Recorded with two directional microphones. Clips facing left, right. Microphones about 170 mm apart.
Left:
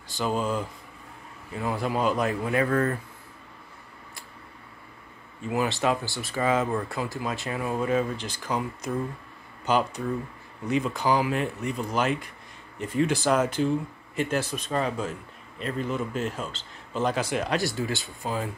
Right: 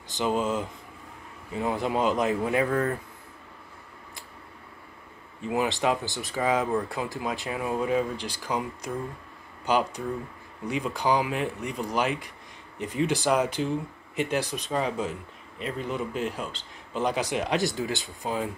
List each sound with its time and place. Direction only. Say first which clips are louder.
0.1 s speech: right 1 dB; 20° right (ahead or behind)
5.5 s speech: even; 15° right (ahead or behind)